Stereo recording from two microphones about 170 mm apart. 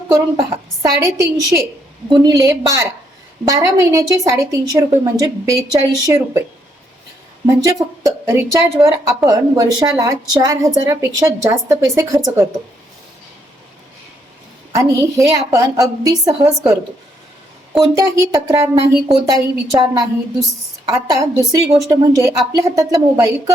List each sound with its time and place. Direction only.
0.1 s a woman's voice: 15° right (ahead or behind)
7.4 s a woman's voice: 20° right (ahead or behind)
14.7 s a woman's voice: 15° right (ahead or behind)
17.9 s a woman's voice: 20° right (ahead or behind)